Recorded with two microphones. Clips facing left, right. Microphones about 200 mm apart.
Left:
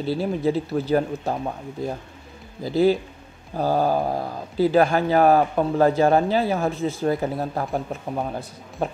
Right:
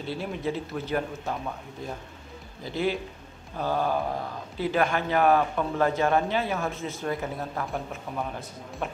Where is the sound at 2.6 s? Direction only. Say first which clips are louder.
Left 9 dB; 35° left (ahead or behind).